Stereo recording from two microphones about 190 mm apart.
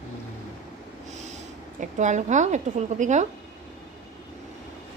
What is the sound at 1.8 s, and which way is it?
A woman's voice, 40° right (ahead or behind).